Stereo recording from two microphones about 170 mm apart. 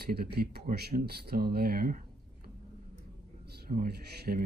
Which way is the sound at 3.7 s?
60° right (ahead or behind).